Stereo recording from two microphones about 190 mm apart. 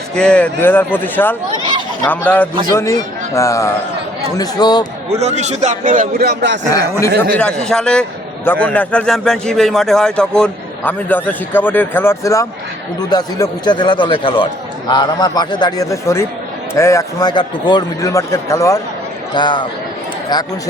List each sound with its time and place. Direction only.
0.1 s a man's voice: 5° left (ahead or behind); by 4.9 s 20° left (ahead or behind)
5.0 s a man's voice: 35° right (ahead or behind); by 6.6 s 60° right (ahead or behind)
7.3 s a man's voice: 5° left (ahead or behind); by 20.5 s 20° left (ahead or behind)